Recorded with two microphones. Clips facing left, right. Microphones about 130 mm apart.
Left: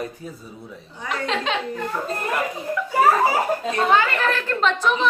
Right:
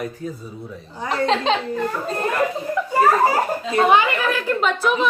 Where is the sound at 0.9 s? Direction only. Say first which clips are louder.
Right 5 dB; 35° right (ahead or behind).